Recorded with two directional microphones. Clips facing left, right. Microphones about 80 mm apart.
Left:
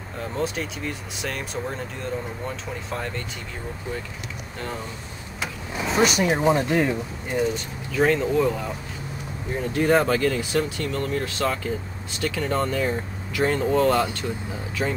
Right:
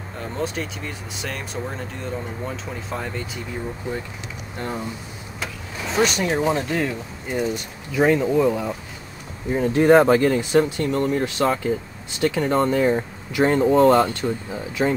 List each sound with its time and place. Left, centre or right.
0.2 s speech: centre
5.4 s speech: centre
7.2 s speech: centre
9.6 s speech: right